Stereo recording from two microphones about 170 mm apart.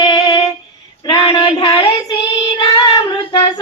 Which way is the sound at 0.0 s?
20° left (ahead or behind).